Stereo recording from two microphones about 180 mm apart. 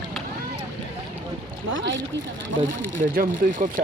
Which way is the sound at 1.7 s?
90° right.